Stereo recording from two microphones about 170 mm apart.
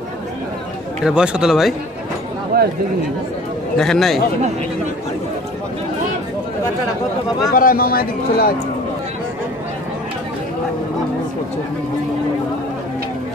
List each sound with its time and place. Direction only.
1.0 s speech: 5° right (ahead or behind)
2.5 s chatter: 60° right (ahead or behind)
3.7 s speech: 5° left (ahead or behind)
7.5 s a man's voice: 60° left (ahead or behind)